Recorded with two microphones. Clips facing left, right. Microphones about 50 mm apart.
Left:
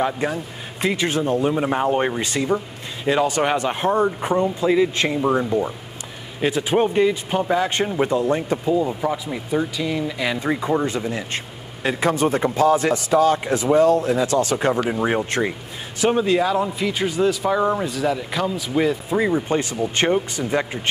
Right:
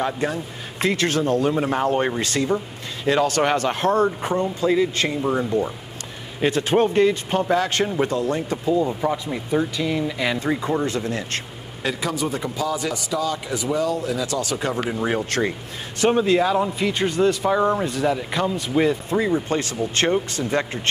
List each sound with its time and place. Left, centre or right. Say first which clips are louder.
0.0 s speech: left 1 dB; centre
3.1 s speech: even; centre
9.0 s speech: even; centre
10.4 s speech: left 1 dB; centre
11.9 s a man's voice: left 6 dB; left
14.9 s speech: left 2 dB; centre
16.0 s speech: even; centre
19.1 s speech: left 1 dB; centre